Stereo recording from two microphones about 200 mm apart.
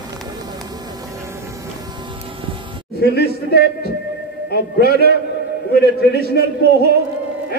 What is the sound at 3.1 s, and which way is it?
A man's voice, 55° left (ahead or behind).